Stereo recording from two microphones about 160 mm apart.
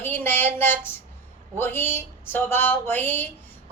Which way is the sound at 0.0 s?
10° left (ahead or behind).